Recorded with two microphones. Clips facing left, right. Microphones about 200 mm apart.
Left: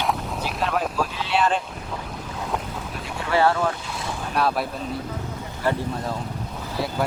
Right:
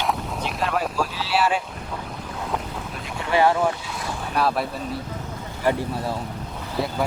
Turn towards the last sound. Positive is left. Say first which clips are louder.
# right 1 dB
turn(degrees=0)  # may be behind; listen again after turning